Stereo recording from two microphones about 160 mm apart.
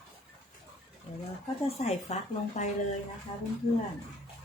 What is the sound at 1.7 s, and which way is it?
Speech, 45° left (ahead or behind).